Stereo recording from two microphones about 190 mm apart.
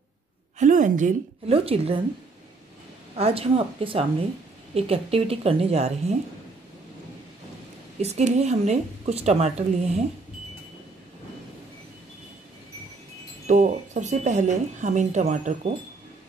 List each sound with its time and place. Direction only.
0.6 s a woman's voice: 40° right (ahead or behind)
3.2 s speech: 30° right (ahead or behind)
8.0 s speech: 35° right (ahead or behind)
13.5 s speech: 40° right (ahead or behind)